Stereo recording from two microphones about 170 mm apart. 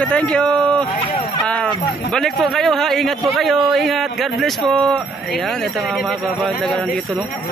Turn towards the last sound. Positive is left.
turn(degrees=5)  # may be behind; listen again after turning